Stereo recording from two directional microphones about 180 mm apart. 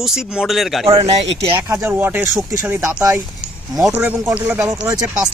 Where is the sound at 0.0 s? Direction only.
5° right (ahead or behind).